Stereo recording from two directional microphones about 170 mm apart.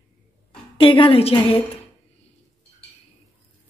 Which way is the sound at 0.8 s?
30° left (ahead or behind).